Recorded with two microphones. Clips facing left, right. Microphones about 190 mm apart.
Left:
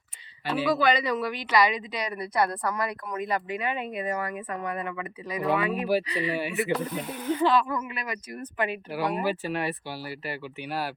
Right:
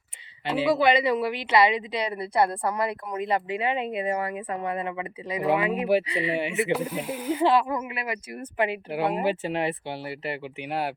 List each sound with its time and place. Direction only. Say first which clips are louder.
0.4 s speech: right 2 dB; 25° right (ahead or behind)
6.7 s speech: right 2 dB; 10° right (ahead or behind)
7.4 s speech: right 2 dB; 25° right (ahead or behind)